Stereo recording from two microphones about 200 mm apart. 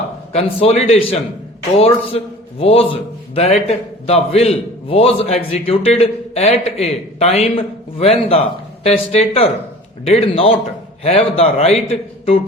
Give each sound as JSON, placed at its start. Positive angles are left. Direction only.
{"t": 0.3, "sound": "a man's voice", "side_deg": 30}